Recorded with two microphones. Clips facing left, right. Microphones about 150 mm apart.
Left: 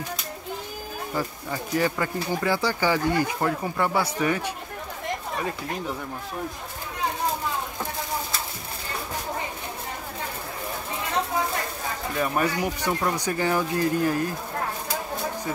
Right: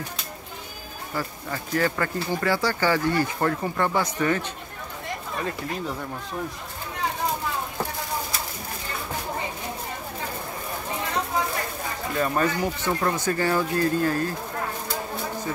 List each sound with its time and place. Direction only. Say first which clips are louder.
1.1 s speech: even; 15° left (ahead or behind)
12.2 s speech: right 1 dB; 15° left (ahead or behind)